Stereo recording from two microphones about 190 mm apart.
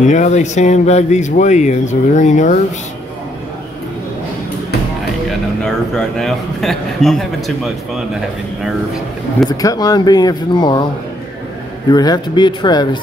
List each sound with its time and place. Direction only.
0.0 s speech: 40° left (ahead or behind)
5.6 s a man's voice: centre (ahead or behind)
9.5 s speech: 20° left (ahead or behind)
11.9 s speech: 20° left (ahead or behind)